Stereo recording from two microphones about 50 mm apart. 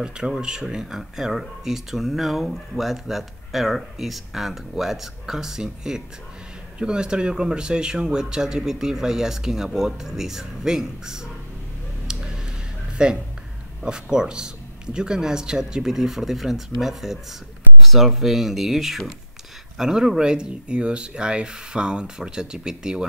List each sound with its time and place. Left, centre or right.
0.0 s speech: centre
12.9 s speech: centre